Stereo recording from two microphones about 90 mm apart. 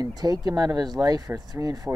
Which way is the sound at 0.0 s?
45° right (ahead or behind).